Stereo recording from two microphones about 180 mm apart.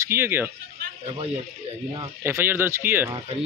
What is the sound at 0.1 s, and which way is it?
Speech, 10° right (ahead or behind).